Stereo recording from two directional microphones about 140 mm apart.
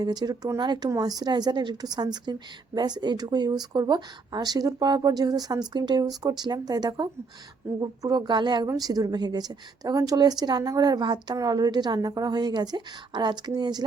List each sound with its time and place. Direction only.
0.0 s a woman's voice: 30° right (ahead or behind)